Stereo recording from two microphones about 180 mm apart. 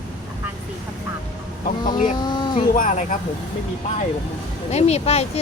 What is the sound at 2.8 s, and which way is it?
Speech, 45° left (ahead or behind).